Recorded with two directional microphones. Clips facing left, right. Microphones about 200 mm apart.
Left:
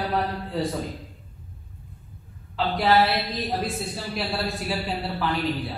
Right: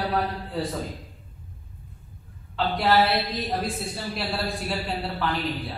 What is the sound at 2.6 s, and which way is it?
A man's voice, centre (ahead or behind).